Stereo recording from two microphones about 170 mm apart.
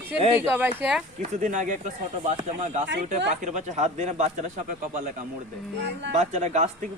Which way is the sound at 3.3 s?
45° right (ahead or behind).